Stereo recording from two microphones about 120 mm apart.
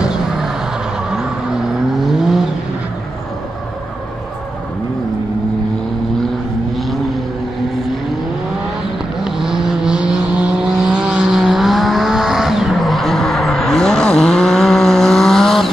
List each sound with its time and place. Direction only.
0.0 s vehicle: 5° right (ahead or behind)
9.2 s vehicle: 5° right (ahead or behind)